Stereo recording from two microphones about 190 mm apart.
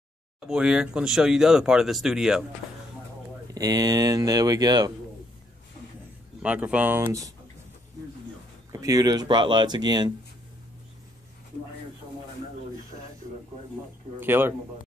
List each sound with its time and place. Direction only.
0.5 s speech: 5° right (ahead or behind)
3.5 s speech: 20° right (ahead or behind)
6.4 s speech: 5° right (ahead or behind)
8.8 s speech: 20° right (ahead or behind)
14.2 s a man's voice: 10° right (ahead or behind)